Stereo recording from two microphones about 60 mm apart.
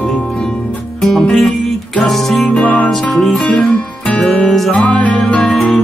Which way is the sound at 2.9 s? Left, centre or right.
Centre.